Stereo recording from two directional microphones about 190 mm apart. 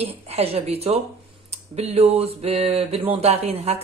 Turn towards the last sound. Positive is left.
turn(degrees=-30)  # may be behind; listen again after turning